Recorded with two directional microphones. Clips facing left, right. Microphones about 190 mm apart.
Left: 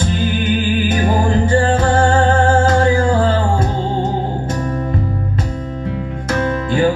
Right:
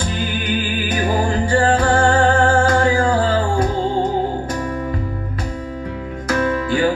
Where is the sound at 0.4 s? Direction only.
25° left (ahead or behind).